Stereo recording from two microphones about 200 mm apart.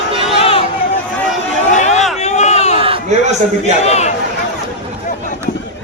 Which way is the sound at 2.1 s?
35° left (ahead or behind).